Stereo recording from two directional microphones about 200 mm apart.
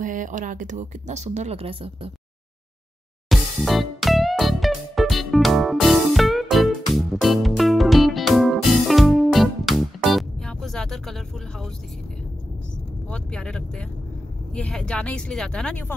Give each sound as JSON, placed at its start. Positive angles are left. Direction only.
{"t": 0.0, "sound": "speech", "side_deg": -40}
{"t": 3.3, "sound": "music", "side_deg": 0}
{"t": 13.1, "sound": "speech", "side_deg": 5}